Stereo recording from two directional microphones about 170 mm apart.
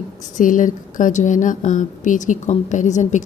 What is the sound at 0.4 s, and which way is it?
A woman's voice, 50° left (ahead or behind).